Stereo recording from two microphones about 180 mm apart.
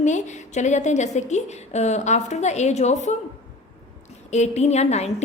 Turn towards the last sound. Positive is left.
turn(degrees=40)  # may be behind; listen again after turning